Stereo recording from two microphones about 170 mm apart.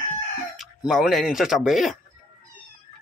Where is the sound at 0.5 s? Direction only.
Centre (ahead or behind).